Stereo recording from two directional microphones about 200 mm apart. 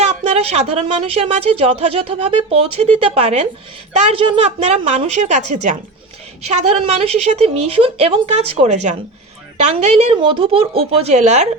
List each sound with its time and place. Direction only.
0.0 s a woman's voice: 30° right (ahead or behind)